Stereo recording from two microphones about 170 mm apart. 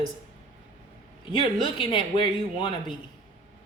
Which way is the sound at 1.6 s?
30° left (ahead or behind).